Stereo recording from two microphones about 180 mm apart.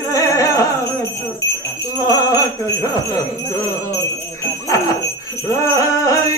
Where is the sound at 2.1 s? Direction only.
20° left (ahead or behind).